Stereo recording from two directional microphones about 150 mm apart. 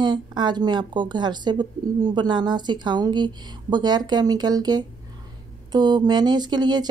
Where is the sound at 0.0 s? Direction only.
30° right (ahead or behind).